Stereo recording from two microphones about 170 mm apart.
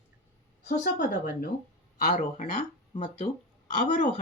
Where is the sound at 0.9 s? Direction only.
55° left (ahead or behind).